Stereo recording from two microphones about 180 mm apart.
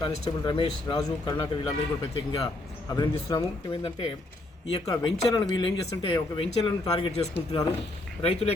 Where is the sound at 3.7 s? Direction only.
30° left (ahead or behind).